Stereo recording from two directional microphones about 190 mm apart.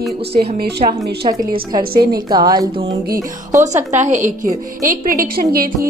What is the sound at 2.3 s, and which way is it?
Speech, 20° right (ahead or behind).